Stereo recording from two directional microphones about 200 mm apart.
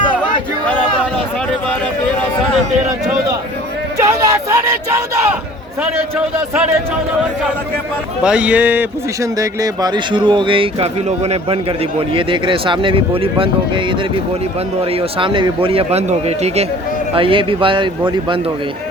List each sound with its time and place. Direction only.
3.9 s a sound: 15° right (ahead or behind)
8.2 s speech: 5° right (ahead or behind)
9.4 s speech: 20° right (ahead or behind)
15.2 s speech: 25° right (ahead or behind)